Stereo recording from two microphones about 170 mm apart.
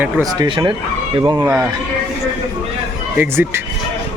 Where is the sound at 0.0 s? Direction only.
20° right (ahead or behind).